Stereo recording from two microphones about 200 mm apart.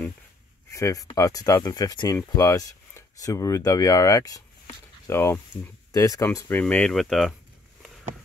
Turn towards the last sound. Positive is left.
turn(degrees=0)  # may be behind; listen again after turning